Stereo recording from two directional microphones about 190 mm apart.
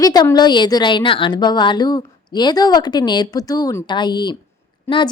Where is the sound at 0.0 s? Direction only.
20° left (ahead or behind).